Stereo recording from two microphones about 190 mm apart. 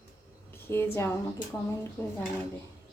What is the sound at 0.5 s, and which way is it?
A woman's voice, 10° left (ahead or behind).